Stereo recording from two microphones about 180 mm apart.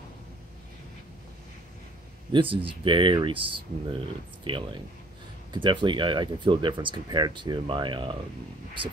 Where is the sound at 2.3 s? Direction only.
30° right (ahead or behind).